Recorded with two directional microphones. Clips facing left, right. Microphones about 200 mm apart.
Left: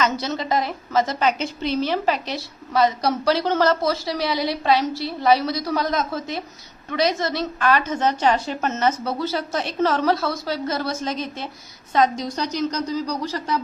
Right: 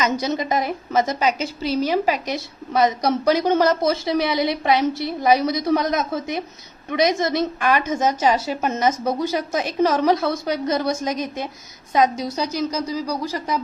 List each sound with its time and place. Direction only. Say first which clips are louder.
0.0 s a woman's voice: right 2 dB; 15° right (ahead or behind)
1.3 s a woman's voice: right 1 dB; 5° right (ahead or behind)